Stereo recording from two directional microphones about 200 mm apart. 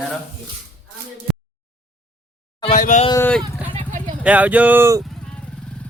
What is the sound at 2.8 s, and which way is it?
Speech, 40° left (ahead or behind).